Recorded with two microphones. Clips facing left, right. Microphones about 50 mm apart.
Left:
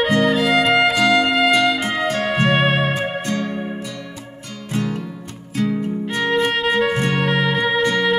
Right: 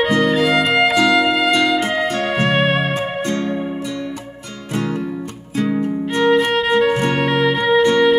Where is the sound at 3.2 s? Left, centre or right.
Right.